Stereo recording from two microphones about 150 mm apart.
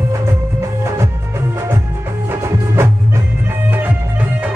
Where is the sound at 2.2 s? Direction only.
15° right (ahead or behind).